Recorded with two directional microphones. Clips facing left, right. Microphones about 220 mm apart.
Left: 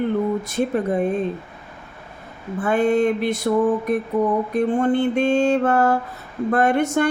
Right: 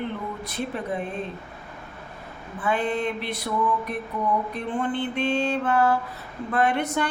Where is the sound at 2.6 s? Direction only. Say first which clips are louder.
Left 8 dB; 45° left (ahead or behind).